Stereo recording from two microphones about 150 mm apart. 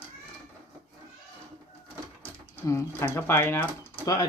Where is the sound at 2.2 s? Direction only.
15° left (ahead or behind).